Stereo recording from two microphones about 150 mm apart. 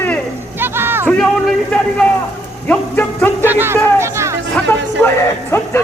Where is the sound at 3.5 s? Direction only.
15° right (ahead or behind).